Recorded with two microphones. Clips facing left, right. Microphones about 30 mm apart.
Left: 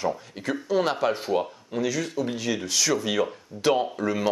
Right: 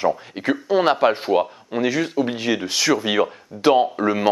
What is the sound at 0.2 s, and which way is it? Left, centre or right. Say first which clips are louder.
Speech: right 7 dB; right.